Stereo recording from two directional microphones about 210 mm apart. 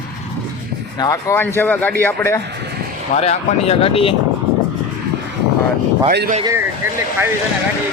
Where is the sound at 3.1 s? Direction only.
30° left (ahead or behind).